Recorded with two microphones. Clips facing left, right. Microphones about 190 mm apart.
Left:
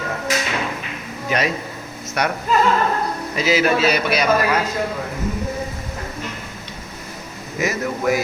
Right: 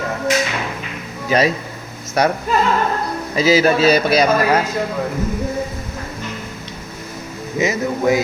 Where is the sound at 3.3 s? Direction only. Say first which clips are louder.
Right 4 dB; 35° right (ahead or behind).